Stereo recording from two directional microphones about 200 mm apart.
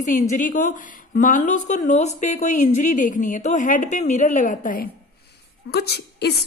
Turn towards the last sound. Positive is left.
turn(degrees=55)  # may be behind; listen again after turning